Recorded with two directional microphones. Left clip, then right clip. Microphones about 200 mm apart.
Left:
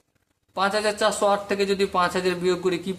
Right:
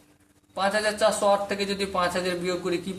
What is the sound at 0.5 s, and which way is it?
A man's voice, 35° left (ahead or behind).